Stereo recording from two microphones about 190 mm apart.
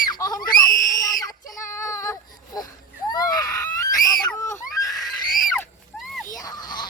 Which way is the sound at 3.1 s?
20° left (ahead or behind).